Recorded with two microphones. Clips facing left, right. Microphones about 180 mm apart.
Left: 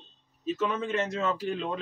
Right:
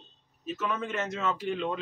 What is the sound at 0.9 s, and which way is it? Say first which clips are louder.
Speech: left 3 dB; 30° left (ahead or behind).